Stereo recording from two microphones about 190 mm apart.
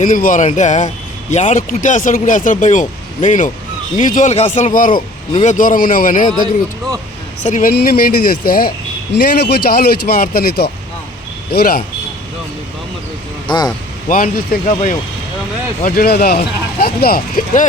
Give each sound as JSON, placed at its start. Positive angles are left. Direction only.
{"t": 0.0, "sound": "speech", "side_deg": 45}
{"t": 7.4, "sound": "speech", "side_deg": 45}
{"t": 14.1, "sound": "speech", "side_deg": 50}
{"t": 14.7, "sound": "speech", "side_deg": 35}
{"t": 15.8, "sound": "speech", "side_deg": 55}